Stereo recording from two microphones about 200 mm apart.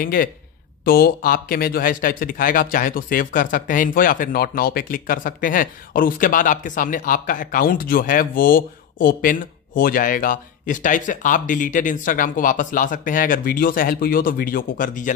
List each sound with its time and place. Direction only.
0.0 s speech: 45° left (ahead or behind)